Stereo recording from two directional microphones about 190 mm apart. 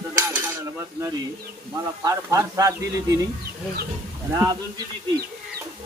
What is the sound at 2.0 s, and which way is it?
Speech, 15° right (ahead or behind).